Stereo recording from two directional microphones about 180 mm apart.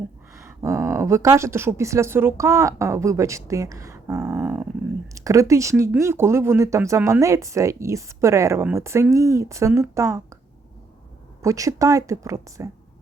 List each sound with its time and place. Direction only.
0.3 s speech: 15° right (ahead or behind)
11.4 s speech: 20° right (ahead or behind)